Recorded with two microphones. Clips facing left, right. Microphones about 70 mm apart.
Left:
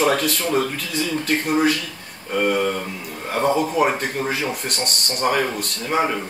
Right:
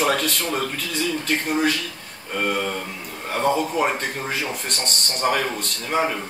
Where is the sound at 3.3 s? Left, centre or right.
Centre.